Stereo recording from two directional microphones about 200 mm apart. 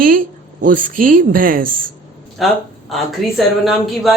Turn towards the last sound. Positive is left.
turn(degrees=0)  # may be behind; listen again after turning